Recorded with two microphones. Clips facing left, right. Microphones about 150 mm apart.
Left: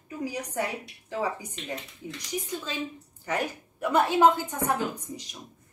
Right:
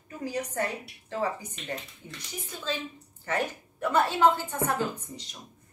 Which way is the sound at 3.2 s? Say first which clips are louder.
Even; 10° left (ahead or behind).